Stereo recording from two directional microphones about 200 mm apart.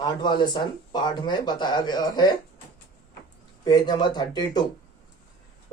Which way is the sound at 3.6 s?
20° left (ahead or behind).